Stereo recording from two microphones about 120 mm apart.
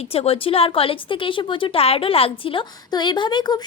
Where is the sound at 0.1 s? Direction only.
55° left (ahead or behind).